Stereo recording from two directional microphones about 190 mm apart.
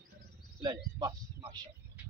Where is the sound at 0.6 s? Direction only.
20° right (ahead or behind).